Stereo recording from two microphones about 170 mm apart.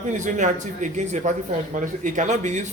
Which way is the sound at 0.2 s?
45° right (ahead or behind).